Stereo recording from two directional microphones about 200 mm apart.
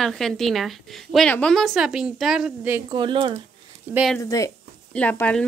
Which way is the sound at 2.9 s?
25° right (ahead or behind).